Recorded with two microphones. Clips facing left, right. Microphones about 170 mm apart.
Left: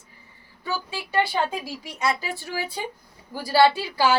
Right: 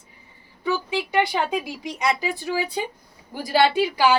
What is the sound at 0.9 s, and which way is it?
A woman's voice, 15° right (ahead or behind).